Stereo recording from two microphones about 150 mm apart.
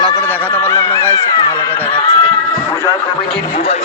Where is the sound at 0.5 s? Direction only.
10° left (ahead or behind).